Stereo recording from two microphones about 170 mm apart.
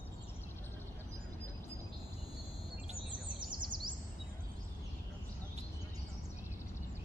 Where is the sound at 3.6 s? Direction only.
25° right (ahead or behind).